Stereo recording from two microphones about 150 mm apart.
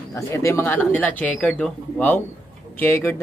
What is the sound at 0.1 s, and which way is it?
Speech, 20° left (ahead or behind).